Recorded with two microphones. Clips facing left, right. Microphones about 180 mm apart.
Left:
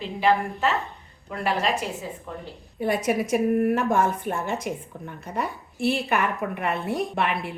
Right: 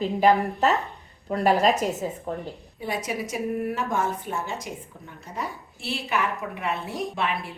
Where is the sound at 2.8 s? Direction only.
55° left (ahead or behind).